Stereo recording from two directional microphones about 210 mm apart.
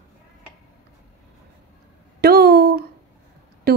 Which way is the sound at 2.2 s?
50° right (ahead or behind).